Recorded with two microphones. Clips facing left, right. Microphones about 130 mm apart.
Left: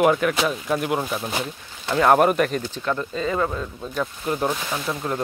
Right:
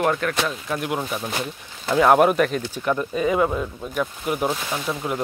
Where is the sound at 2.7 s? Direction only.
15° right (ahead or behind).